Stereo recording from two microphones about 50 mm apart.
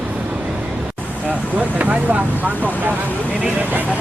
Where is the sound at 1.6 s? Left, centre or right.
Right.